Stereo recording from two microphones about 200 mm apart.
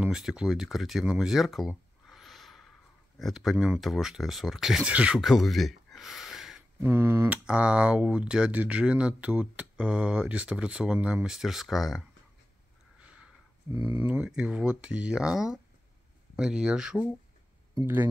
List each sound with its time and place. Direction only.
0.0 s speech: 5° right (ahead or behind)
6.8 s speech: 10° right (ahead or behind)
13.0 s a sound: 5° right (ahead or behind)
13.7 s speech: 20° right (ahead or behind)
14.0 s speech: 5° right (ahead or behind)